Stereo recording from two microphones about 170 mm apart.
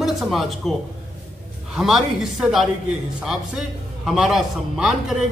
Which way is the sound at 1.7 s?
Centre (ahead or behind).